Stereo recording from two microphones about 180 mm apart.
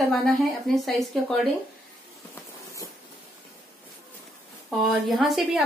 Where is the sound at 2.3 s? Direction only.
15° left (ahead or behind).